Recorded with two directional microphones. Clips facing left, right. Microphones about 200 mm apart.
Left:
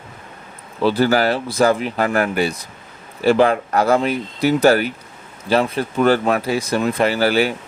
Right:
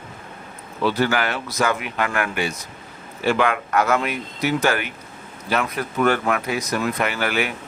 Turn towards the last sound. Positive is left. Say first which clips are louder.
# left 7 dB
turn(degrees=30)  # may be behind; listen again after turning